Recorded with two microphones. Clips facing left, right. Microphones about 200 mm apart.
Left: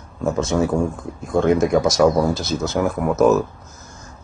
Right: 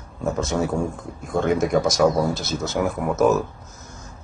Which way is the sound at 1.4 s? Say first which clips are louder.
Left 4 dB; centre (ahead or behind).